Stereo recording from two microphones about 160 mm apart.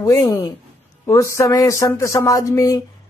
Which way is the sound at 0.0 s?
15° left (ahead or behind).